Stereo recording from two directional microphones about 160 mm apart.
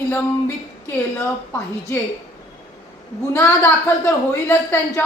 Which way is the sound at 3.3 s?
20° left (ahead or behind).